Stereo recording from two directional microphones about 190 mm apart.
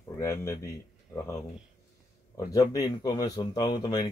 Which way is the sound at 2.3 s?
20° left (ahead or behind).